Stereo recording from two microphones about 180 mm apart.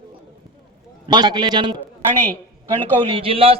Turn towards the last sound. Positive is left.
turn(degrees=-30)  # may be behind; listen again after turning